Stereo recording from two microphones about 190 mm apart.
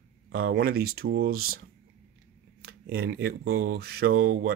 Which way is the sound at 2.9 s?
55° right (ahead or behind).